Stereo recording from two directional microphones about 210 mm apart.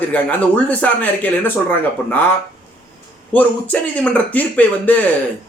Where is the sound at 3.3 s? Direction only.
5° left (ahead or behind).